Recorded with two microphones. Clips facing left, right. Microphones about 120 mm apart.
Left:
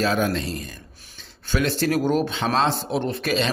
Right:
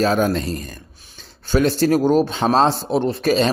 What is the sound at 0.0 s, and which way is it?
Speech, 40° right (ahead or behind).